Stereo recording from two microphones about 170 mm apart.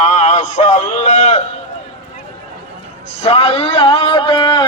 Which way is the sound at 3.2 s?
35° left (ahead or behind).